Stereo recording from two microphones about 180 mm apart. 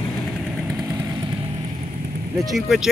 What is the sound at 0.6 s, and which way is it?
Vehicle, centre (ahead or behind).